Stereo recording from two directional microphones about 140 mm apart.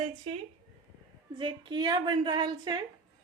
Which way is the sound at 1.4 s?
35° right (ahead or behind).